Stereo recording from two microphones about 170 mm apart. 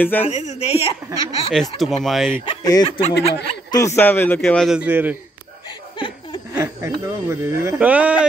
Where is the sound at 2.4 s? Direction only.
25° left (ahead or behind); by 4.8 s 5° left (ahead or behind).